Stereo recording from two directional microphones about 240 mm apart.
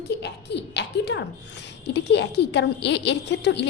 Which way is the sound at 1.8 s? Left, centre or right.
Left.